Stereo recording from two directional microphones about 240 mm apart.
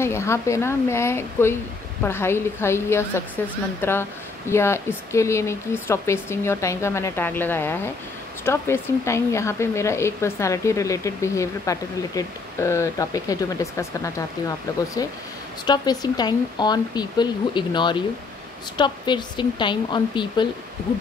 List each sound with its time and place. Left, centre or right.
0.0 s a woman's voice: centre